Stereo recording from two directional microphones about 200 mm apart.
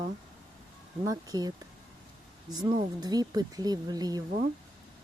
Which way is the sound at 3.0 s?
20° right (ahead or behind).